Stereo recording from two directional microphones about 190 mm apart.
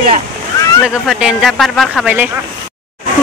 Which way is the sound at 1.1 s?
5° right (ahead or behind).